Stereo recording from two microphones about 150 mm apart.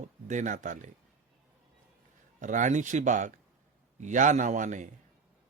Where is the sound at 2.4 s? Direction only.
55° right (ahead or behind).